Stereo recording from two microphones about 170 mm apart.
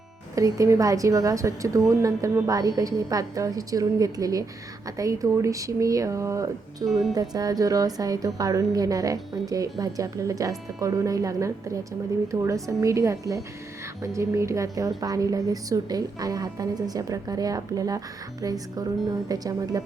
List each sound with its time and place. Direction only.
0.3 s a woman's voice: 20° right (ahead or behind)
6.8 s speech: centre (ahead or behind)
7.1 s a woman's voice: 20° right (ahead or behind)